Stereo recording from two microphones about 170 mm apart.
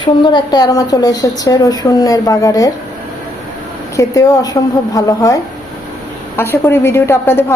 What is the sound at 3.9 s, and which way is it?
A woman's voice, 20° left (ahead or behind).